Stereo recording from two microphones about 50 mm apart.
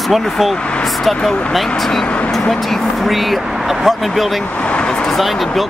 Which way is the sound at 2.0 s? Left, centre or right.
Left.